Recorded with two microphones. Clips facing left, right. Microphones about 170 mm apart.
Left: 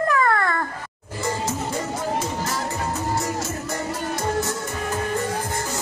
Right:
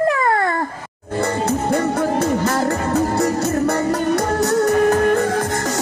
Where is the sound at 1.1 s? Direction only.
65° right (ahead or behind).